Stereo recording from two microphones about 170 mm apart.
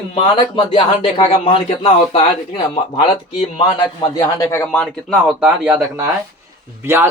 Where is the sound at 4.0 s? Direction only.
20° left (ahead or behind); by 5.1 s 5° left (ahead or behind).